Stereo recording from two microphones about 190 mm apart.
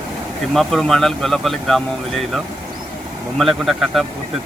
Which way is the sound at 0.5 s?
Centre (ahead or behind).